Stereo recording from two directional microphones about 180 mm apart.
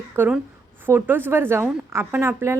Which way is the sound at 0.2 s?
5° right (ahead or behind).